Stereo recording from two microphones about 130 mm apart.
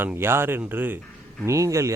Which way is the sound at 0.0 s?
15° right (ahead or behind).